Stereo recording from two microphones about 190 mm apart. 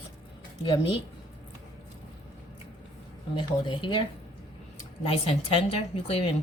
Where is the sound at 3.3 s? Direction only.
25° left (ahead or behind).